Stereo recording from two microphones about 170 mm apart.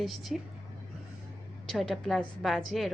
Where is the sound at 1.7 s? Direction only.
Centre (ahead or behind).